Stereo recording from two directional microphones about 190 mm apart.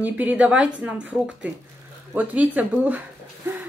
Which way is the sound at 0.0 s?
10° right (ahead or behind).